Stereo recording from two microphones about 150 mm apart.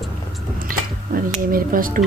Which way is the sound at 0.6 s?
70° right (ahead or behind).